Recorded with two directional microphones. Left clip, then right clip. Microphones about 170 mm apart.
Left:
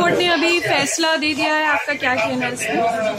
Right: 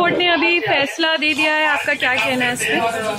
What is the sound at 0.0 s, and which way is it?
Speech, 10° left (ahead or behind).